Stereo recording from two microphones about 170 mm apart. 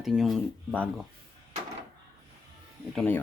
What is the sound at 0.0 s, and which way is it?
Speech, centre (ahead or behind).